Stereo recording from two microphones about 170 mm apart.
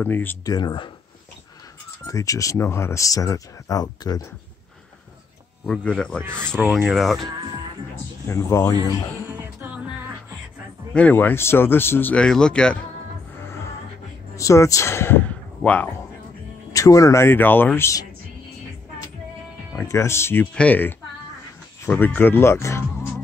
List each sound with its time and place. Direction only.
0.0 s speech: 10° left (ahead or behind)
0.6 s speech: 25° left (ahead or behind)
2.0 s speech: 20° left (ahead or behind)
5.7 s speech: 5° left (ahead or behind)
6.6 s speech: 10° right (ahead or behind)
7.2 s speech: 25° right (ahead or behind)
8.3 s speech: 15° left (ahead or behind)
9.3 s music: 10° right (ahead or behind)
10.9 s speech: 10° left (ahead or behind)
13.4 s music: 15° left (ahead or behind)
14.3 s a man's voice: 20° left (ahead or behind)
16.7 s speech: 20° left (ahead or behind)
19.7 s speech: 15° left (ahead or behind)